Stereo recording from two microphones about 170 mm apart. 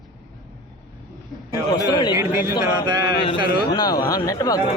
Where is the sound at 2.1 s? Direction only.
15° right (ahead or behind).